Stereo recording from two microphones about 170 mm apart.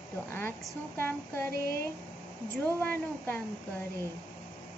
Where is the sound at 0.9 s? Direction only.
10° left (ahead or behind).